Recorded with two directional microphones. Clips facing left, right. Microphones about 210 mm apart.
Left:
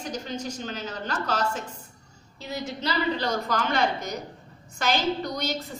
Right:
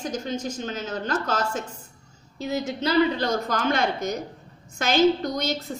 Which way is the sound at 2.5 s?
50° right (ahead or behind).